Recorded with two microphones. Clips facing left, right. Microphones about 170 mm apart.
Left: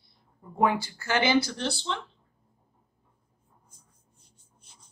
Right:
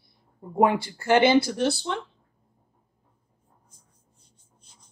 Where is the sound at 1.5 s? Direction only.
15° right (ahead or behind).